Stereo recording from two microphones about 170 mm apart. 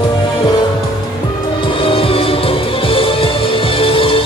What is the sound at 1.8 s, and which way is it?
Music, 30° left (ahead or behind).